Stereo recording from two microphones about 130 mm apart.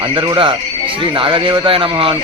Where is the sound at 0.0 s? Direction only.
35° right (ahead or behind).